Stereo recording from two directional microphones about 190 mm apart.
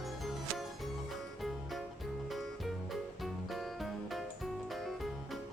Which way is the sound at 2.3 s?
Centre (ahead or behind).